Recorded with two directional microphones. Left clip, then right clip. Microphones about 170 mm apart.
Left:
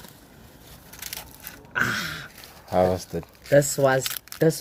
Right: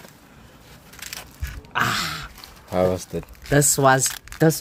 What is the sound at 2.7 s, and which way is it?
Speech, 15° right (ahead or behind).